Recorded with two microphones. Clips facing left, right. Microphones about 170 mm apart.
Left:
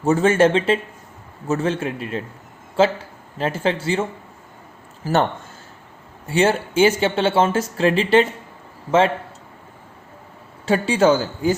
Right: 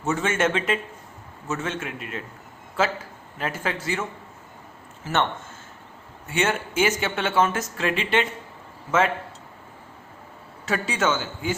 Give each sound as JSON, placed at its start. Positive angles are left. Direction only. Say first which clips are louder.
{"t": 0.0, "sound": "speech", "louder": "left 8 dB", "side_deg": 35}
{"t": 10.7, "sound": "speech", "louder": "left 8 dB", "side_deg": 30}